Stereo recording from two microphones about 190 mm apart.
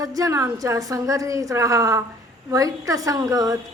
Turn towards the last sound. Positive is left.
turn(degrees=-20)  # may be behind; listen again after turning